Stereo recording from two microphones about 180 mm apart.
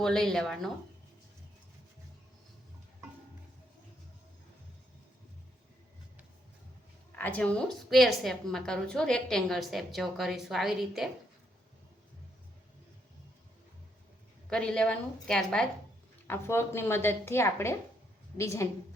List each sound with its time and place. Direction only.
0.0 s a woman's voice: 5° left (ahead or behind)
7.2 s a woman's voice: 10° left (ahead or behind)
14.5 s a woman's voice: 5° left (ahead or behind)